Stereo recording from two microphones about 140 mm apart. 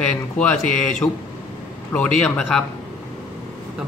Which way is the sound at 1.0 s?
15° left (ahead or behind).